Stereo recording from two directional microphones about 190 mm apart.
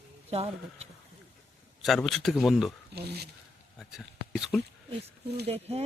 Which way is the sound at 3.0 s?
60° right (ahead or behind).